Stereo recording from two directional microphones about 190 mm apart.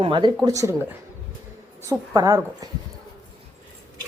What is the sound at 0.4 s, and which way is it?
Speech, 15° right (ahead or behind).